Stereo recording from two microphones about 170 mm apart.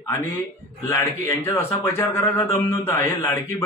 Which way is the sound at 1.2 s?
15° left (ahead or behind).